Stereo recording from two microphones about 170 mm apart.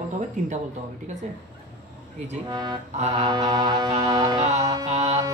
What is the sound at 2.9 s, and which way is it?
Mantra, 40° right (ahead or behind).